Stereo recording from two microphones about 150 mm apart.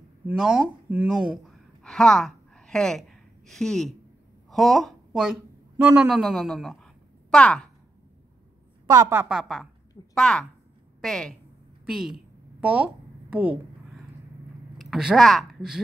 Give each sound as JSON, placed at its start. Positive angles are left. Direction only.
{"t": 0.3, "sound": "a woman's voice", "side_deg": -5}
{"t": 8.8, "sound": "a woman's voice", "side_deg": -20}
{"t": 9.3, "sound": "a woman's voice", "side_deg": 0}
{"t": 11.8, "sound": "a sound", "side_deg": -5}
{"t": 14.8, "sound": "a woman's voice", "side_deg": 0}